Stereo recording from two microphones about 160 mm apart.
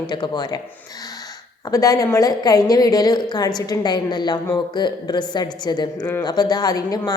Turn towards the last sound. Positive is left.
turn(degrees=25)  # may be behind; listen again after turning